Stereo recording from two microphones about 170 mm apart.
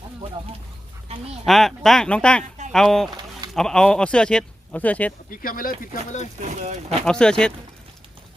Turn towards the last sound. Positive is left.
turn(degrees=5)  # may be behind; listen again after turning